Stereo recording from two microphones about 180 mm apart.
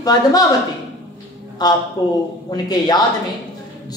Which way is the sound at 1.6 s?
25° left (ahead or behind).